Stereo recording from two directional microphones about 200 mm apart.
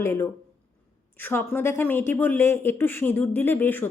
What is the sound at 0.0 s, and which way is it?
A woman's voice, 10° left (ahead or behind).